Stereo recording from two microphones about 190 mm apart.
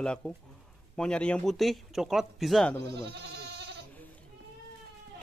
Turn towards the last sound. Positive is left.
turn(degrees=-65)  # may be behind; listen again after turning